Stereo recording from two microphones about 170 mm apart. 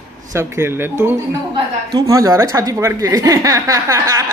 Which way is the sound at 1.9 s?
20° right (ahead or behind).